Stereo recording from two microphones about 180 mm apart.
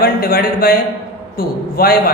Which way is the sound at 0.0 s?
55° left (ahead or behind).